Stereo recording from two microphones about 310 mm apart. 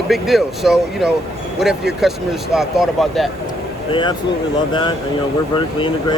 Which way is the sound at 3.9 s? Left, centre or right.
Centre.